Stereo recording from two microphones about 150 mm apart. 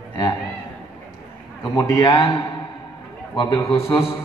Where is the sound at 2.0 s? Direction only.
35° left (ahead or behind).